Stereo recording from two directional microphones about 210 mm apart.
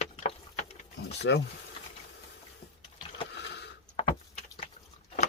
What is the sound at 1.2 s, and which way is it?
Speech, 55° left (ahead or behind).